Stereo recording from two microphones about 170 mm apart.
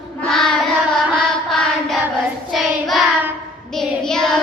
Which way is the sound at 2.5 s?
Centre (ahead or behind).